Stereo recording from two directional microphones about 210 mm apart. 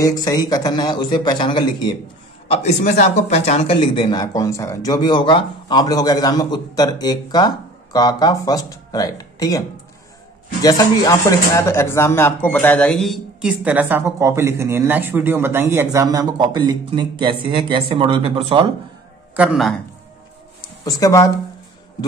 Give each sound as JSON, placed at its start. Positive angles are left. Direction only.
{"t": 0.0, "sound": "speech", "side_deg": 15}
{"t": 10.6, "sound": "speech", "side_deg": 15}
{"t": 19.3, "sound": "a man's voice", "side_deg": -5}
{"t": 20.8, "sound": "speech", "side_deg": 15}